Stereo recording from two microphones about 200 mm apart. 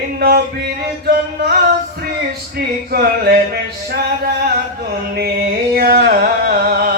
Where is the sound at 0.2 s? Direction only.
50° right (ahead or behind).